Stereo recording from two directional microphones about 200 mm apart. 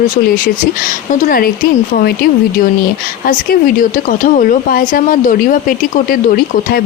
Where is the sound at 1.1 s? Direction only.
45° left (ahead or behind).